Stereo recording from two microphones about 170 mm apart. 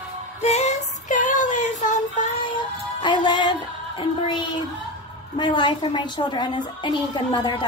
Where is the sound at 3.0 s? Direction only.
25° left (ahead or behind).